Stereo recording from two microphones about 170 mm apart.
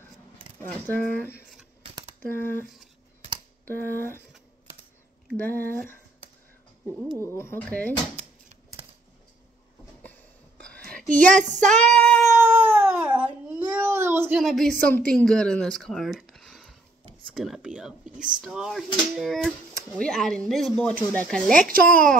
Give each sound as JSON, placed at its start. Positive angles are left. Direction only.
{"t": 0.6, "sound": "speech", "side_deg": 10}
{"t": 5.4, "sound": "speech", "side_deg": 10}
{"t": 7.2, "sound": "speech", "side_deg": 15}
{"t": 11.6, "sound": "child singing", "side_deg": 5}
{"t": 12.4, "sound": "cat", "side_deg": -15}
{"t": 13.5, "sound": "baby cry", "side_deg": -10}
{"t": 14.4, "sound": "speech", "side_deg": 0}
{"t": 17.3, "sound": "a sound", "side_deg": 0}
{"t": 21.5, "sound": "speech", "side_deg": -60}